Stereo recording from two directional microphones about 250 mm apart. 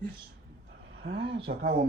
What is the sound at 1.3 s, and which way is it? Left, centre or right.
Speech, right.